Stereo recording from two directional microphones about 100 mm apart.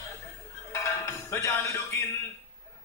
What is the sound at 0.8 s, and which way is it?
Music, 25° left (ahead or behind).